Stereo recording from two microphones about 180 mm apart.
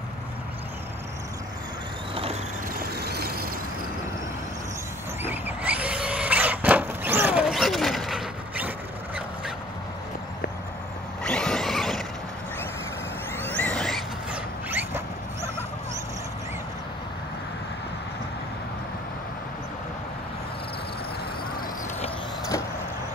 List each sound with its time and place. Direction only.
2.7 s vehicle: 60° right (ahead or behind)
5.2 s vehicle: 10° right (ahead or behind)
11.2 s vehicle: 5° left (ahead or behind)
13.4 s a sound: 10° left (ahead or behind)
14.7 s dog: 10° right (ahead or behind)